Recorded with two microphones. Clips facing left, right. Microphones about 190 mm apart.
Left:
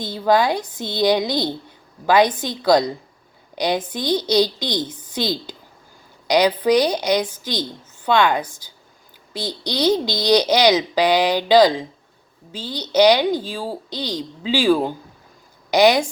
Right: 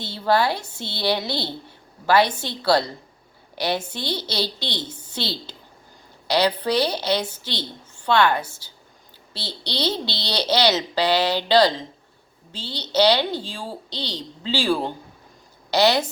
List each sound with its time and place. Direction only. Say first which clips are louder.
0.0 s speech: left 3 dB; 15° left (ahead or behind)